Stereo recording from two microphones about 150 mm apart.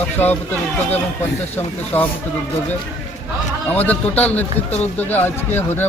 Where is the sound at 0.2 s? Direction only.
15° left (ahead or behind).